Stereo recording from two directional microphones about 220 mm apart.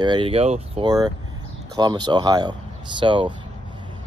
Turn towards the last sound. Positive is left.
turn(degrees=-20)  # may be behind; listen again after turning